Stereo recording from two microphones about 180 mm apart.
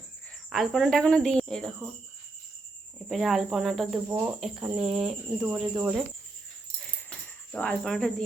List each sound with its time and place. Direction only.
0.5 s speech: centre (ahead or behind)
3.1 s speech: centre (ahead or behind)
6.7 s keys jangling: 5° left (ahead or behind)